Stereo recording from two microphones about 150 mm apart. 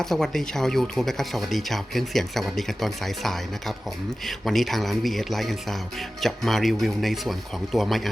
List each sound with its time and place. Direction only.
0.0 s speech: centre (ahead or behind)